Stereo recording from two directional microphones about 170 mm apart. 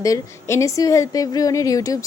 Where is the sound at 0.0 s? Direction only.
20° left (ahead or behind).